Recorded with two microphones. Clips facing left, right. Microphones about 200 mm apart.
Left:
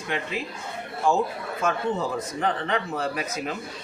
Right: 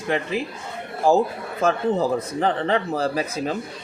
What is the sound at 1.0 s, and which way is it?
Speech, 35° right (ahead or behind).